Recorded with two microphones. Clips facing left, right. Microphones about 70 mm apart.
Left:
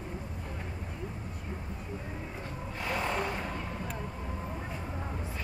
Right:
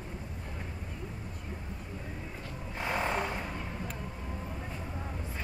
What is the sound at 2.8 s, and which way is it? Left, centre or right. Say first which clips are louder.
Vehicle: right 1 dB; right.